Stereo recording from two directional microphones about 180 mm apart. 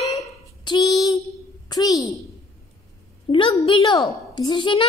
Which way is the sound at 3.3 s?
25° left (ahead or behind).